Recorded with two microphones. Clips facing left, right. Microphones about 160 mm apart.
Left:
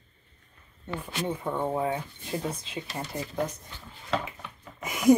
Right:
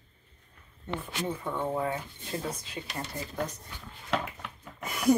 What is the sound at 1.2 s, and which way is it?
Speech, 20° left (ahead or behind).